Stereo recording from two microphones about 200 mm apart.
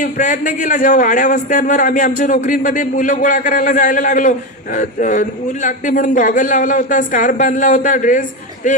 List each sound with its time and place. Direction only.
0.0 s a man's voice: 40° left (ahead or behind)